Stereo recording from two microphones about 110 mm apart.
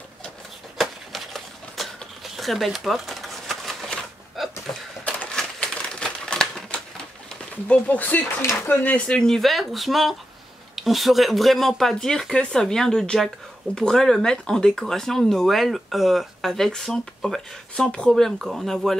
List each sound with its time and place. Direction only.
0.7 s a sound: centre (ahead or behind)
5.0 s typewriter: 10° left (ahead or behind)
7.2 s speech: 10° left (ahead or behind)
8.4 s speech: 25° left (ahead or behind)
8.8 s speech: 10° left (ahead or behind)